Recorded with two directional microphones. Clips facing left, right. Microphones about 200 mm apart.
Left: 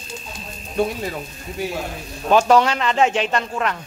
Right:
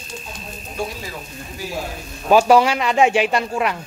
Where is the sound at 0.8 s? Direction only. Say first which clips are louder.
Left 6 dB; 60° left (ahead or behind).